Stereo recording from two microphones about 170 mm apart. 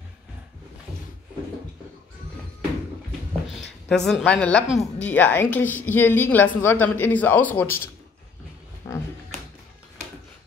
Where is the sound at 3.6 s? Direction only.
5° left (ahead or behind).